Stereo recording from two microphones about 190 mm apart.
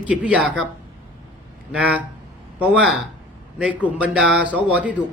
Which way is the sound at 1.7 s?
10° right (ahead or behind).